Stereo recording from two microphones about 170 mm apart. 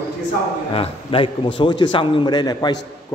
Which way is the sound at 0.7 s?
35° left (ahead or behind).